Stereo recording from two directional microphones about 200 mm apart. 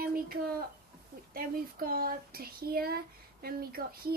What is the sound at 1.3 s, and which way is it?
Speech, 45° right (ahead or behind).